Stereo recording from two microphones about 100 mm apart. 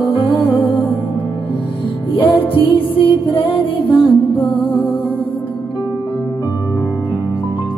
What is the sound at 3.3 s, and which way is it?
Music, 60° left (ahead or behind).